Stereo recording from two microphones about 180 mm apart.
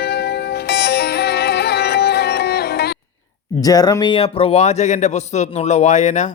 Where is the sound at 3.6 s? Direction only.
20° left (ahead or behind); by 6.3 s 40° left (ahead or behind).